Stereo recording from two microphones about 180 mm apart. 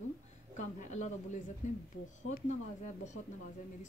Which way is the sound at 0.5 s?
40° left (ahead or behind).